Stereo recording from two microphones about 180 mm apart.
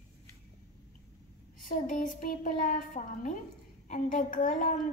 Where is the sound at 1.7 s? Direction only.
50° left (ahead or behind).